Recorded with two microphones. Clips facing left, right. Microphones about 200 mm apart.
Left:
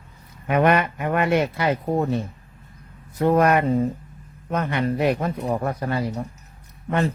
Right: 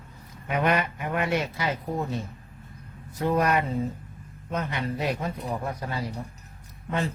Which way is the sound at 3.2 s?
60° left (ahead or behind).